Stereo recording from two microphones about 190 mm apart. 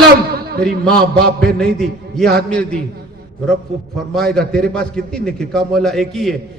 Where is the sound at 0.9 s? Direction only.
55° right (ahead or behind).